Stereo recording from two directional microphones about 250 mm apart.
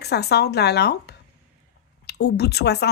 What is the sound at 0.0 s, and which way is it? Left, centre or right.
Speech, left.